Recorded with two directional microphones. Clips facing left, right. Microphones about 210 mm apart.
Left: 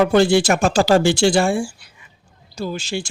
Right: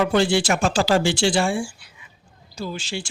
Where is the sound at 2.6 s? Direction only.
45° left (ahead or behind).